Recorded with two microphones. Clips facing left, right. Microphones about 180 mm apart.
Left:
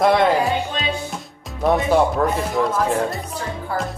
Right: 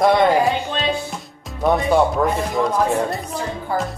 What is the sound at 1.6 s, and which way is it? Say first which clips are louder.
Speech: even; centre (ahead or behind).